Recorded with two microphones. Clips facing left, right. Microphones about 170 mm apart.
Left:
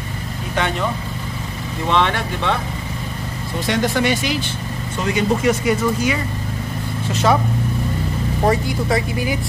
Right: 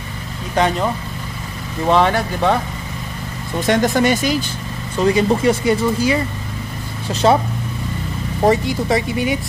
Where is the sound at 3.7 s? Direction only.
45° right (ahead or behind).